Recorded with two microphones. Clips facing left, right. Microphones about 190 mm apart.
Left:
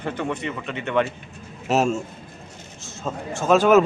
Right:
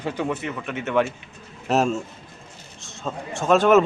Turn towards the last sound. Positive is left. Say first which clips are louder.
# left 1 dB
turn(degrees=0)  # may be behind; listen again after turning